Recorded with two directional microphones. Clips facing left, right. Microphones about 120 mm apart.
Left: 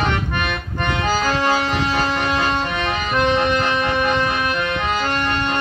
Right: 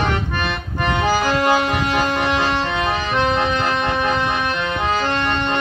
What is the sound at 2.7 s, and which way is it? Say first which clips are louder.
Music: right 1 dB; 25° right (ahead or behind).